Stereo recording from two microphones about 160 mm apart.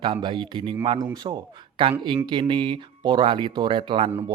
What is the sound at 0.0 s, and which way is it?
Speech, 30° right (ahead or behind).